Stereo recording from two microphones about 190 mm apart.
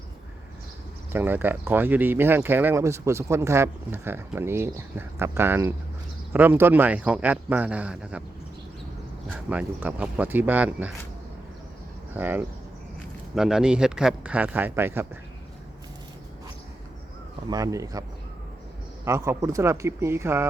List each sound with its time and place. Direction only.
1.1 s speech: 10° right (ahead or behind)
9.3 s speech: 5° right (ahead or behind)
12.1 s speech: 10° right (ahead or behind)
17.5 s speech: 20° right (ahead or behind)
19.0 s speech: 15° right (ahead or behind)